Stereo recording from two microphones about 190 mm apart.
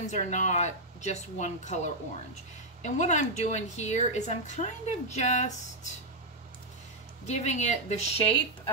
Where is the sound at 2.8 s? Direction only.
40° left (ahead or behind).